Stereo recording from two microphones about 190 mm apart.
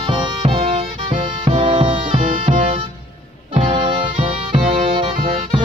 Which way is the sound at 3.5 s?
25° right (ahead or behind).